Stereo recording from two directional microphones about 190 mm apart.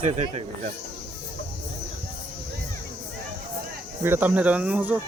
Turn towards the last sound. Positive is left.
turn(degrees=-10)  # may be behind; listen again after turning